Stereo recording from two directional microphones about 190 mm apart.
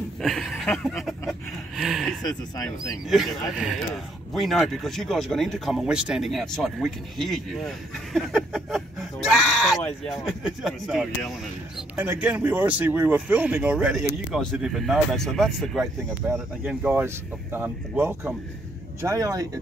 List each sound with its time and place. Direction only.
0.2 s speech: centre (ahead or behind)
0.8 s a sound: centre (ahead or behind)
2.2 s speech: 20° left (ahead or behind)
3.1 s speech: centre (ahead or behind)
16.6 s speech: 10° right (ahead or behind)